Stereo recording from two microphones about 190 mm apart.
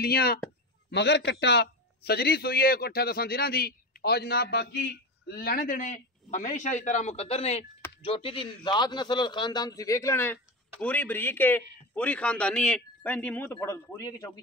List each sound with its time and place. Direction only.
0.0 s a man's voice: 55° left (ahead or behind)
0.8 s a man's voice: 65° left (ahead or behind); by 14.4 s 15° left (ahead or behind)